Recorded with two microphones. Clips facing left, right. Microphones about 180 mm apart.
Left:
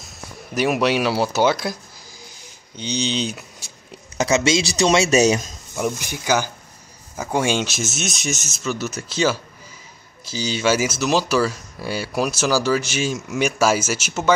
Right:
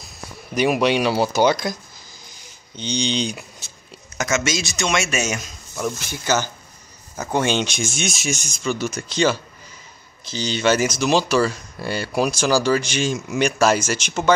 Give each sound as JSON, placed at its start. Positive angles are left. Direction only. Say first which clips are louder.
{"t": 0.6, "sound": "speech", "louder": "right 1 dB", "side_deg": 0}
{"t": 4.2, "sound": "speech", "louder": "left 4 dB", "side_deg": 30}
{"t": 5.8, "sound": "speech", "louder": "left 2 dB", "side_deg": 15}